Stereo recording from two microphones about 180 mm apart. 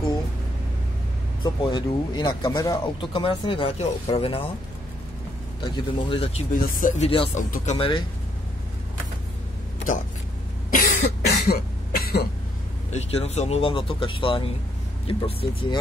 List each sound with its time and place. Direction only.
1.4 s speech: 25° left (ahead or behind)
5.6 s speech: 30° left (ahead or behind)
6.5 s speech: 45° left (ahead or behind); by 8.0 s 30° left (ahead or behind)
10.7 s cough: 45° left (ahead or behind)
12.9 s speech: 35° left (ahead or behind)